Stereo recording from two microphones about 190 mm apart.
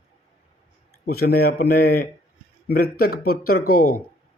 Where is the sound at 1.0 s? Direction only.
55° left (ahead or behind).